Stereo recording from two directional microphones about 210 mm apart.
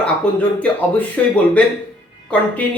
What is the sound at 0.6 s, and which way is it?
Speech, 5° left (ahead or behind).